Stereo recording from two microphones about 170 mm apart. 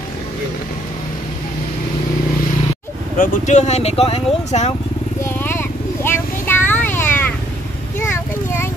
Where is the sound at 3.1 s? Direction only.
50° left (ahead or behind).